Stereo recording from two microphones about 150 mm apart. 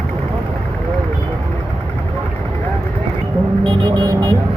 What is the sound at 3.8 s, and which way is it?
Speech, 30° right (ahead or behind).